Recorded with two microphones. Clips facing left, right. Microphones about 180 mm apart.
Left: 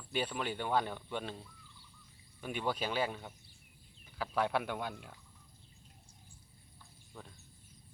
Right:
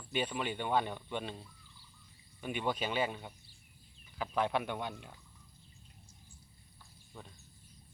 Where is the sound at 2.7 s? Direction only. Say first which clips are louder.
Right 1 dB; 5° left (ahead or behind).